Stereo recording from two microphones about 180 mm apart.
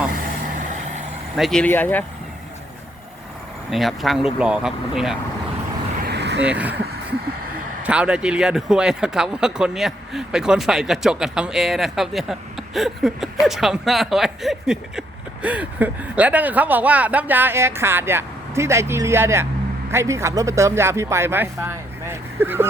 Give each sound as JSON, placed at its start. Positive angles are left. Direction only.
{"t": 1.4, "sound": "speech", "side_deg": 5}
{"t": 3.7, "sound": "speech", "side_deg": 0}
{"t": 6.1, "sound": "vehicle", "side_deg": -70}
{"t": 6.4, "sound": "speech", "side_deg": -5}
{"t": 7.9, "sound": "speech", "side_deg": -5}